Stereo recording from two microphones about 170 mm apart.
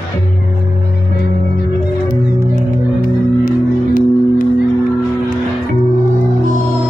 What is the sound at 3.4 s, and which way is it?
Music, 50° left (ahead or behind).